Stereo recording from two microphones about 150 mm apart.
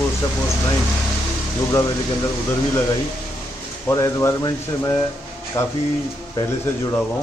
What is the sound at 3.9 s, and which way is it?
Speech, 20° left (ahead or behind).